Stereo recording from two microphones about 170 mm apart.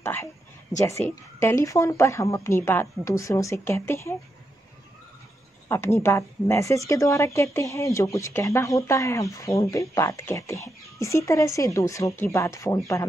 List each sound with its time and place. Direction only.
0.0 s a woman's voice: 15° left (ahead or behind)
5.7 s a woman's voice: 15° left (ahead or behind)